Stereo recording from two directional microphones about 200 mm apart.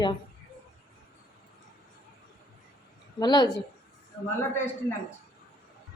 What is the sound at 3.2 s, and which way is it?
Speech, 20° left (ahead or behind).